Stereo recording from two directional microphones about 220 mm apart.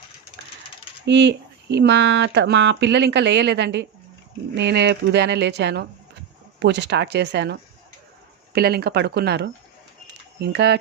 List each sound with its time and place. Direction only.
1.0 s speech: 55° right (ahead or behind)